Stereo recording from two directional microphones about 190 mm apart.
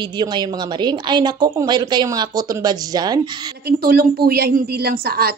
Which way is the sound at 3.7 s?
55° right (ahead or behind).